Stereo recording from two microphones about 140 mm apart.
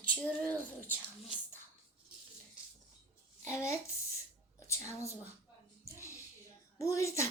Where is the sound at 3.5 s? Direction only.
20° left (ahead or behind).